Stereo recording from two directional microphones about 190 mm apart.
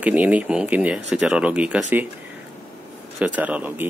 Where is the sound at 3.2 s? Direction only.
5° right (ahead or behind).